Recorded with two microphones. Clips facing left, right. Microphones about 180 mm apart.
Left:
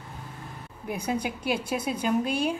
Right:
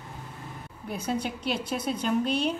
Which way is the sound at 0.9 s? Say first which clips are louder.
Left 1 dB; 10° left (ahead or behind).